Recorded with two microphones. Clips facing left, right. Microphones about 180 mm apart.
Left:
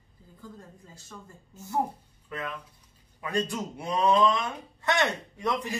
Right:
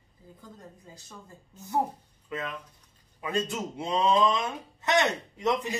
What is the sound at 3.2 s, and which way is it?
A man's voice, 20° right (ahead or behind).